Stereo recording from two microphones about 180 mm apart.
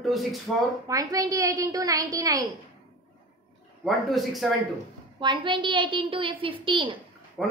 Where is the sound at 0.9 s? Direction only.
20° right (ahead or behind).